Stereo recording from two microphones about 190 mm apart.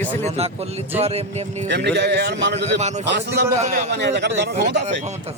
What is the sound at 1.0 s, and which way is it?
Speech, 30° right (ahead or behind).